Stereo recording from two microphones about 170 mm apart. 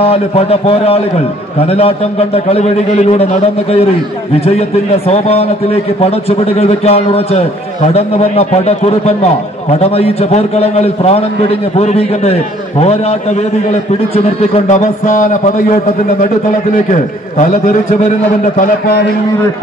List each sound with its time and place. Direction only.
0.0 s a man's voice: 35° left (ahead or behind)
4.6 s a man's voice: 35° left (ahead or behind)
16.9 s a man's voice: 45° left (ahead or behind)
18.6 s a man's voice: 65° left (ahead or behind)